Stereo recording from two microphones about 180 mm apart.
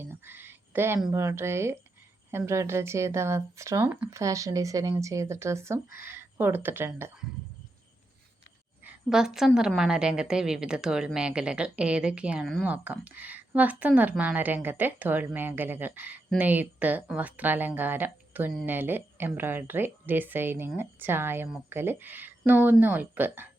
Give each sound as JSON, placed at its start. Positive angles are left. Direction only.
{"t": 0.0, "sound": "a woman's voice", "side_deg": -10}
{"t": 8.8, "sound": "a woman's voice", "side_deg": -5}